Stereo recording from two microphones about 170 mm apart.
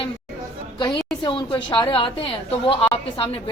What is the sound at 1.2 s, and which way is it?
A woman's voice, 30° left (ahead or behind).